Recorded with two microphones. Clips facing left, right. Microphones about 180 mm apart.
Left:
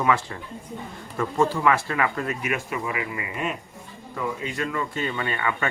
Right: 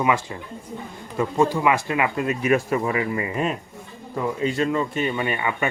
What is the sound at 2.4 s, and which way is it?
Speech, 35° right (ahead or behind).